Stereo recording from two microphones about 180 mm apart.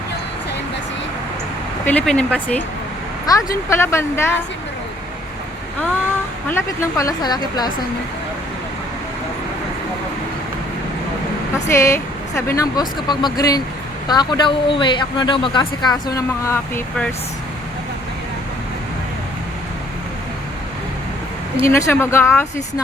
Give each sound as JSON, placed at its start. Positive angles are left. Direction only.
{"t": 1.8, "sound": "speech", "side_deg": 10}
{"t": 3.7, "sound": "speech", "side_deg": 15}
{"t": 6.5, "sound": "speech", "side_deg": 15}
{"t": 11.7, "sound": "speech", "side_deg": 15}
{"t": 21.6, "sound": "speech", "side_deg": 15}